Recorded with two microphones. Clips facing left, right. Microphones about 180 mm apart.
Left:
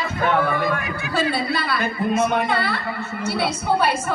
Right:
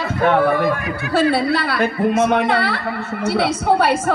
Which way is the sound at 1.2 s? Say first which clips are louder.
Right 6 dB; 70° right (ahead or behind).